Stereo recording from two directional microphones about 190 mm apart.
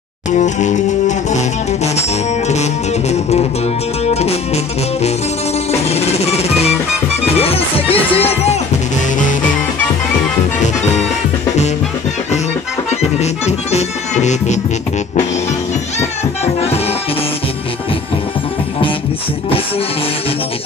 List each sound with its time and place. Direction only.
0.3 s music: 40° left (ahead or behind)
5.7 s music: 35° left (ahead or behind)
7.3 s speech: 30° left (ahead or behind)
13.2 s music: 35° left (ahead or behind)